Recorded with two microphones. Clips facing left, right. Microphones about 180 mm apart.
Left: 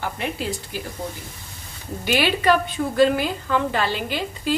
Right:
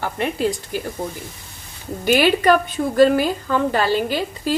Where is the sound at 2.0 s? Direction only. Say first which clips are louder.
Right 4 dB; 45° right (ahead or behind).